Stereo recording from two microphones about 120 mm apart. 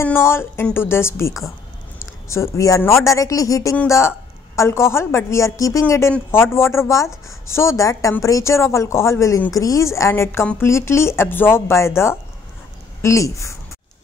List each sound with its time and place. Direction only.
0.0 s speech: 20° left (ahead or behind)